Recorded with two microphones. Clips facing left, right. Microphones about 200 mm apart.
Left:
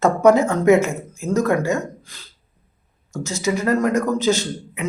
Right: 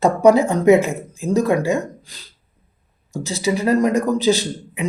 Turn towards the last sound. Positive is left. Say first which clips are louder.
# right 1 dB
turn(degrees=-15)  # may be behind; listen again after turning